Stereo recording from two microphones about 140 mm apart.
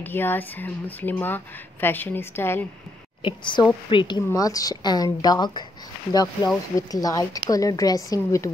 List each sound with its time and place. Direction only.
0.0 s a woman's voice: 15° left (ahead or behind)
3.2 s a woman's voice: 35° left (ahead or behind)
4.2 s a woman's voice: 25° left (ahead or behind)